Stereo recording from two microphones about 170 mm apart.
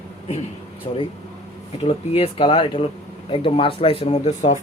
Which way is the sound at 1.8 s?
35° left (ahead or behind).